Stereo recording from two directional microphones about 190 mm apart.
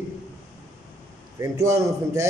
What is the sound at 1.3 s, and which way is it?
Speech, 15° right (ahead or behind).